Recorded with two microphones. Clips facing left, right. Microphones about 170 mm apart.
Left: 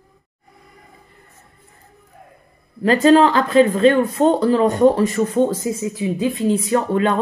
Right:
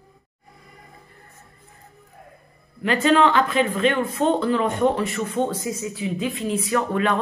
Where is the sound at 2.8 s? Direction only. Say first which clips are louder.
Left 6 dB; 40° left (ahead or behind).